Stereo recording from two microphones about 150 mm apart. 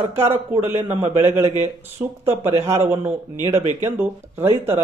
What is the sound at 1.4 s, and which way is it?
Speech, 45° right (ahead or behind).